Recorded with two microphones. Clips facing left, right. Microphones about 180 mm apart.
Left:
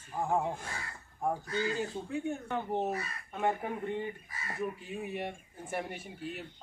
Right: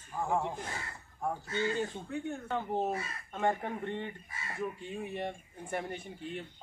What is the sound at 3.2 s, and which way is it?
Speech, 5° left (ahead or behind).